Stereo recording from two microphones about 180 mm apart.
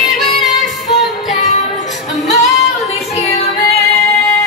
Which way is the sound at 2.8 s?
35° left (ahead or behind).